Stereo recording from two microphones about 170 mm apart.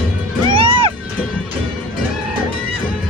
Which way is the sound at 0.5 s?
30° right (ahead or behind).